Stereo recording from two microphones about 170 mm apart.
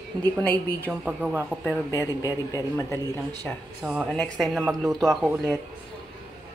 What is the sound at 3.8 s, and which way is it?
Speech, 10° right (ahead or behind).